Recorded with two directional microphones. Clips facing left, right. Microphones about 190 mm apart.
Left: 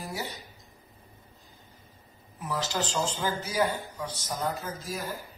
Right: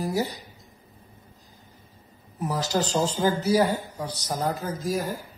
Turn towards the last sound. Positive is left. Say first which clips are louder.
# right 8 dB
turn(degrees=-40)  # may be behind; listen again after turning